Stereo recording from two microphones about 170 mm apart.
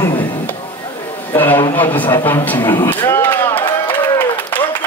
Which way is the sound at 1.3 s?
10° left (ahead or behind).